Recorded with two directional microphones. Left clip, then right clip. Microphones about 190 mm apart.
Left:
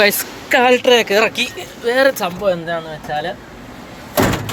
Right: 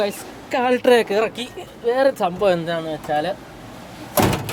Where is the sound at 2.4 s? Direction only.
55° right (ahead or behind).